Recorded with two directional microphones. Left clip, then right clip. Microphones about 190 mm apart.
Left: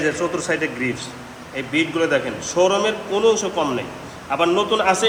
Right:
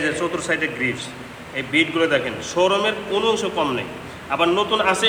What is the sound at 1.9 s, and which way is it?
A man's voice, 25° left (ahead or behind).